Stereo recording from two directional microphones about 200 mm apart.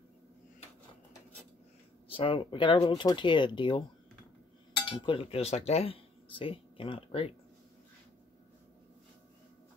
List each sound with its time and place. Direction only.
2.0 s speech: 25° left (ahead or behind)
4.8 s speech: 25° left (ahead or behind)